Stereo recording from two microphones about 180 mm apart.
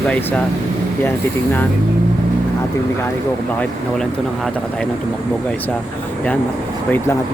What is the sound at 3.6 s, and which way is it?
Speech, 5° left (ahead or behind).